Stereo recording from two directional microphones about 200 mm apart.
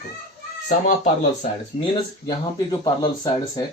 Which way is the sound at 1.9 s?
20° left (ahead or behind).